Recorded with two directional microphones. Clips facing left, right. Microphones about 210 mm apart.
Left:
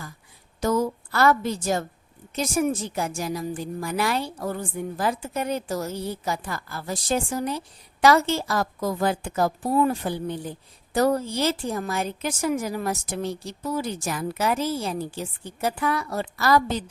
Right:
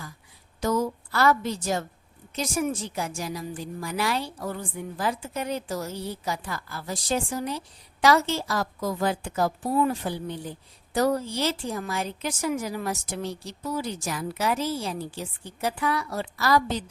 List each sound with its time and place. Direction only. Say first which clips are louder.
0.6 s a woman's voice: left 2 dB; 50° left (ahead or behind)